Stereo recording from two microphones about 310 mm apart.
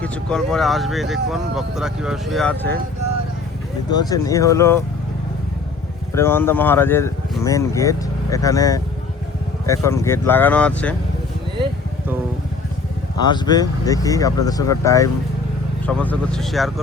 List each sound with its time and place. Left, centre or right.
0.0 s speech: centre
3.9 s speech: centre
6.1 s speech: centre
13.2 s speech: centre